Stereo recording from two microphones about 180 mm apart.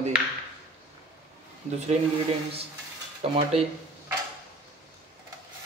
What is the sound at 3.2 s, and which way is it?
Speech, 35° right (ahead or behind).